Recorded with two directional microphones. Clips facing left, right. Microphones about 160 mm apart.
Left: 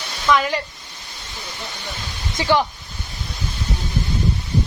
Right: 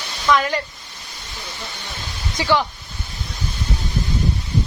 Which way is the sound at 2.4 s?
15° left (ahead or behind).